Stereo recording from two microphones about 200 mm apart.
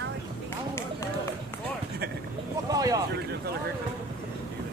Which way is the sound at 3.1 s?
55° right (ahead or behind).